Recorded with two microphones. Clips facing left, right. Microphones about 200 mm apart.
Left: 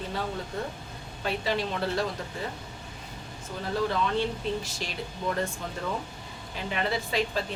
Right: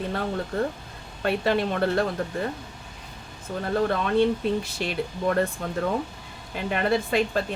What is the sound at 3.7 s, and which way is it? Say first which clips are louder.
Speech: right 5 dB; 55° right (ahead or behind).